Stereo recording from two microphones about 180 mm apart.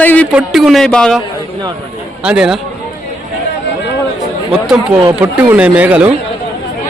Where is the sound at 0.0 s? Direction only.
10° left (ahead or behind).